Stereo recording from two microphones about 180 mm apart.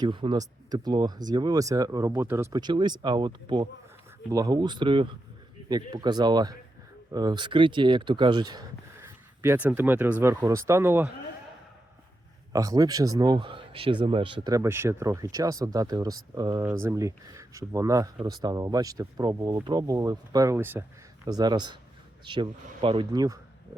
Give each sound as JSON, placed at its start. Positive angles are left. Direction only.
{"t": 0.0, "sound": "speech", "side_deg": -25}
{"t": 12.5, "sound": "speech", "side_deg": -20}